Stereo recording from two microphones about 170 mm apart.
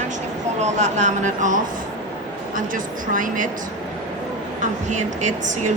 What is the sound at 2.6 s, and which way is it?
Speech, 50° right (ahead or behind).